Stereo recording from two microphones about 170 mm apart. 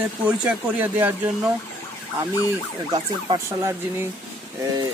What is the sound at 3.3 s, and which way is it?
Speech, 15° right (ahead or behind).